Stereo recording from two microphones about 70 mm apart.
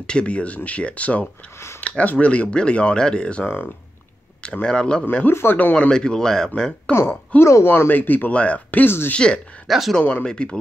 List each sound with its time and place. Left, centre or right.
0.0 s speech: centre
5.3 s speech: left
5.6 s speech: centre
6.9 s speech: left
7.7 s speech: left
9.7 s speech: centre
10.2 s speech: centre